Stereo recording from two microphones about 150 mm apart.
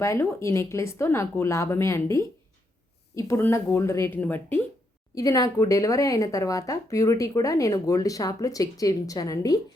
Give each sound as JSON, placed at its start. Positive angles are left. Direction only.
{"t": 0.0, "sound": "speech", "side_deg": 20}
{"t": 5.1, "sound": "speech", "side_deg": 25}